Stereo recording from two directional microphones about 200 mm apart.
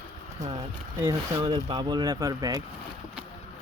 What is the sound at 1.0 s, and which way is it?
Speech, 20° right (ahead or behind).